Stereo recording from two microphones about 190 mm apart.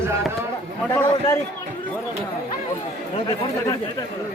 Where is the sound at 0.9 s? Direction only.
15° left (ahead or behind).